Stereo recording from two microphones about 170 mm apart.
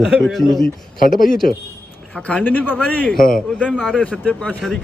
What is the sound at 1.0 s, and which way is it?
Speech, 55° left (ahead or behind).